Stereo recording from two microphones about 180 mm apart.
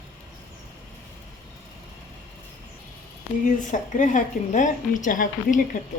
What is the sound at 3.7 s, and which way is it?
A woman's voice, 45° left (ahead or behind).